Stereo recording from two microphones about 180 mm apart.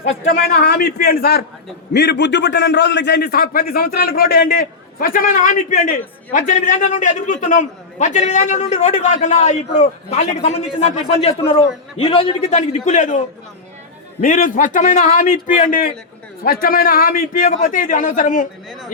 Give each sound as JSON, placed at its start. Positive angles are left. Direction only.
{"t": 0.0, "sound": "a man's voice", "side_deg": 75}